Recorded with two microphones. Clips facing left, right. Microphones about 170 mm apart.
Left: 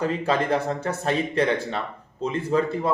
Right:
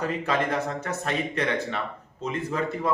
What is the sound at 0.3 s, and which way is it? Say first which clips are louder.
A man's voice: left 3 dB; 30° left (ahead or behind).